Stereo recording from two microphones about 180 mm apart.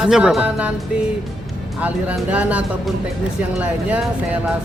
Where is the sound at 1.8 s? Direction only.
10° right (ahead or behind).